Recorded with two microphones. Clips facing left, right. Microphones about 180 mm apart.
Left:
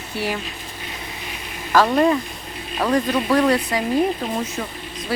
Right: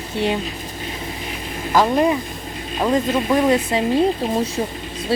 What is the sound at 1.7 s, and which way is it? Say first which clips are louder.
Speech: even; 15° right (ahead or behind).